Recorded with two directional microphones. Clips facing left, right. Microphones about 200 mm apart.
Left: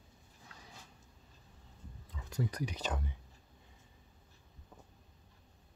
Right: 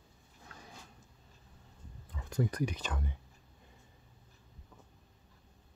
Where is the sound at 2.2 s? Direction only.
50° right (ahead or behind).